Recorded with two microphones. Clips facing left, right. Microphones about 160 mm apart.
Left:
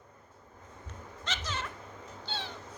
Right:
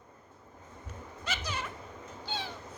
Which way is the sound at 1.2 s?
10° right (ahead or behind).